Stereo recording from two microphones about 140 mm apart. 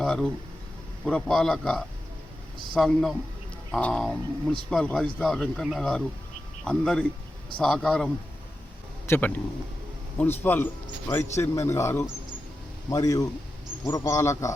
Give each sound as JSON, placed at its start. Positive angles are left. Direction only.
{"t": 0.0, "sound": "a sound", "side_deg": 5}
{"t": 1.0, "sound": "speech", "side_deg": 5}
{"t": 9.0, "sound": "a man's voice", "side_deg": 15}